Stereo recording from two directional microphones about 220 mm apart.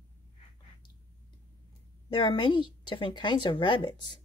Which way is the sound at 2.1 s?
20° left (ahead or behind).